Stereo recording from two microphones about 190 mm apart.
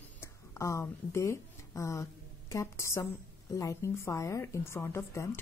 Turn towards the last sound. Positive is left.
turn(degrees=15)  # may be behind; listen again after turning